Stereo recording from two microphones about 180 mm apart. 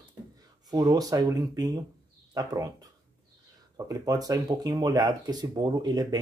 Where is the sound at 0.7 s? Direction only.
20° right (ahead or behind).